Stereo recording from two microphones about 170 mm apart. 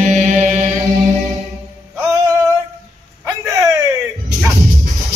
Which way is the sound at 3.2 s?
20° right (ahead or behind).